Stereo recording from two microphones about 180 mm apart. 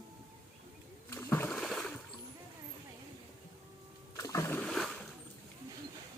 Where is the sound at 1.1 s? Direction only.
15° left (ahead or behind).